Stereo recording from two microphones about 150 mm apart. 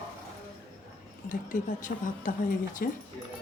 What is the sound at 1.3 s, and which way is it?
Speech, 60° left (ahead or behind).